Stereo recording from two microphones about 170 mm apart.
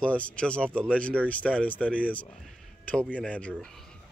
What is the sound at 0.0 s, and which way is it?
Speech, 5° left (ahead or behind).